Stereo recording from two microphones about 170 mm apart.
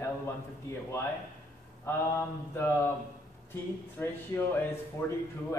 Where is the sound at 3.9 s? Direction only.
15° left (ahead or behind).